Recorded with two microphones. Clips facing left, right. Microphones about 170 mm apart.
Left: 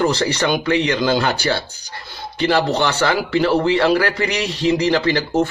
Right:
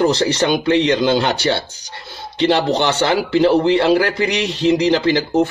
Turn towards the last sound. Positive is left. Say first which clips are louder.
# right 2 dB
turn(degrees=-20)  # may be behind; listen again after turning